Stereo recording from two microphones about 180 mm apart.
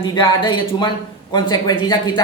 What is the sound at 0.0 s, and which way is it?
A man's voice, 25° left (ahead or behind).